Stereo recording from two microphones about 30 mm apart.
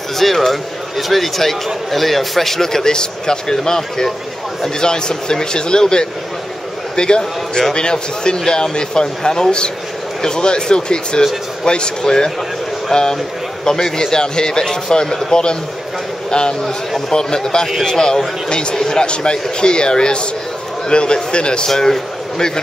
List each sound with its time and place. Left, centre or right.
0.2 s a man's voice: centre
16.3 s a man's voice: left
18.5 s a man's voice: left
18.8 s a man's voice: centre
19.0 s a man's voice: left
21.6 s a man's voice: centre